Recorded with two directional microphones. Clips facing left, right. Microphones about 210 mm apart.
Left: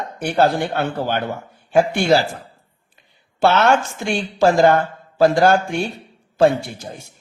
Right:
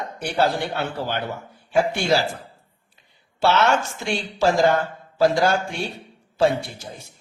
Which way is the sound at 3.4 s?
55° left (ahead or behind).